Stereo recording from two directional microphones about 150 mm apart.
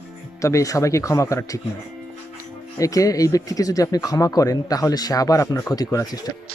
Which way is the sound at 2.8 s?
25° left (ahead or behind).